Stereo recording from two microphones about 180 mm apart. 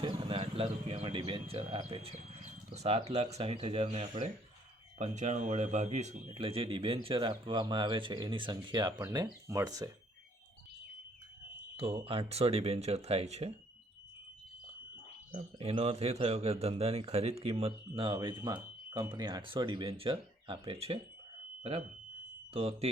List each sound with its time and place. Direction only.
0.0 s a man's voice: 30° right (ahead or behind)
6.2 s speech: 30° right (ahead or behind)
11.8 s a man's voice: 30° right (ahead or behind)
15.3 s a man's voice: 30° right (ahead or behind)